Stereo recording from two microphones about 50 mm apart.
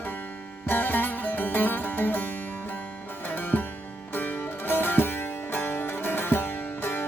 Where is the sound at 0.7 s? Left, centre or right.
Left.